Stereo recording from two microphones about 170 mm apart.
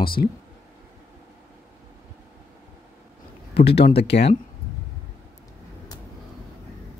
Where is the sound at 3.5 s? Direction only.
75° left (ahead or behind).